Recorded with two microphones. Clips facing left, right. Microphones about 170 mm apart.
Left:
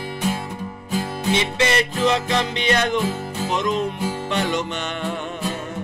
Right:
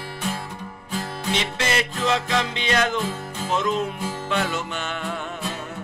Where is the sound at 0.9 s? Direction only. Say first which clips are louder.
Left 5 dB; 5° left (ahead or behind).